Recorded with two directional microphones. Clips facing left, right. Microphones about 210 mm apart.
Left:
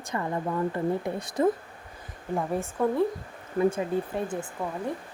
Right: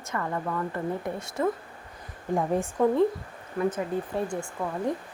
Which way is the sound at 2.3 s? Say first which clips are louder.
Right 3 dB; 15° right (ahead or behind).